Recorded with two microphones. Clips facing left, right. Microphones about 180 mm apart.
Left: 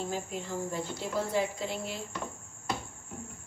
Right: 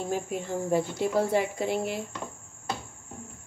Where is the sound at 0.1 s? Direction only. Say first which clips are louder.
Right 5 dB; 60° right (ahead or behind).